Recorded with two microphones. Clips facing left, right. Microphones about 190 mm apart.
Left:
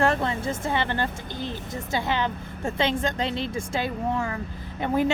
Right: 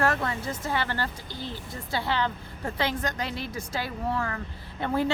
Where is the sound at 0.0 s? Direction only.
25° left (ahead or behind).